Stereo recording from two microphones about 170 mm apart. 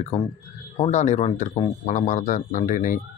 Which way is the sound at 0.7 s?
40° left (ahead or behind).